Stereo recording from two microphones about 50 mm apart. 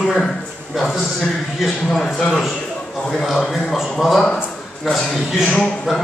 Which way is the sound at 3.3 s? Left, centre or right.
Centre.